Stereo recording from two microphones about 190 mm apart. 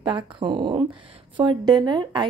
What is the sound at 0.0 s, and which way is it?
Speech, 25° right (ahead or behind).